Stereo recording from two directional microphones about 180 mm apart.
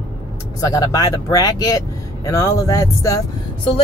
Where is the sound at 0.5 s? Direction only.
20° left (ahead or behind).